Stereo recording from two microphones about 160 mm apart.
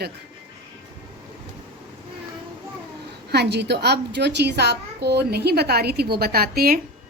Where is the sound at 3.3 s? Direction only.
90° right.